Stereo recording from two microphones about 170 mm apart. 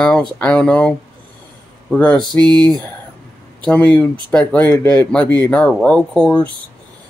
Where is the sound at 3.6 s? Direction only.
10° left (ahead or behind).